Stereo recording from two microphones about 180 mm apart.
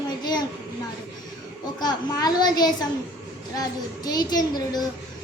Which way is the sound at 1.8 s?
20° left (ahead or behind).